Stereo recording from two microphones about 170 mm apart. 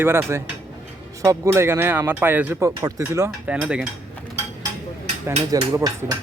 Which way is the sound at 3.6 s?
5° right (ahead or behind).